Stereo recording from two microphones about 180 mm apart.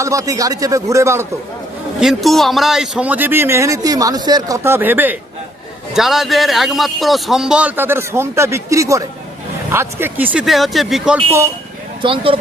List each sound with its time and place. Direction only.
0.0 s a man's voice: 15° right (ahead or behind)
2.0 s a man's voice: centre (ahead or behind)
12.0 s speech: 30° right (ahead or behind)